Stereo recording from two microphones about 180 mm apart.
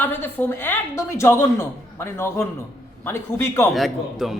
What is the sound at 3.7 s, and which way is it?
Speech, centre (ahead or behind).